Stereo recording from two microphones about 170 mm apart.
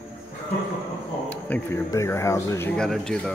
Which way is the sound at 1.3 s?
10° left (ahead or behind).